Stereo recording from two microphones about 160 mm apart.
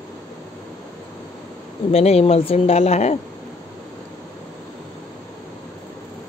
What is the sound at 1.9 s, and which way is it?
Speech, 40° left (ahead or behind).